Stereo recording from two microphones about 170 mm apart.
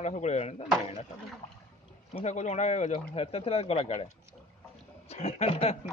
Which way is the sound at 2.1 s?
40° left (ahead or behind).